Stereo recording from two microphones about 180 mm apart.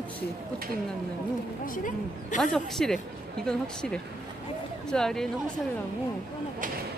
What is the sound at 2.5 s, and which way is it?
Speech, 5° left (ahead or behind).